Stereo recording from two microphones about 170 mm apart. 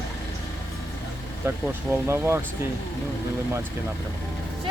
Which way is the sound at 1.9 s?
15° right (ahead or behind).